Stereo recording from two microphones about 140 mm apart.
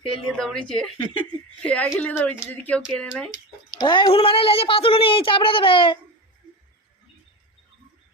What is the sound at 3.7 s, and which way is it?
A woman's voice, 30° left (ahead or behind).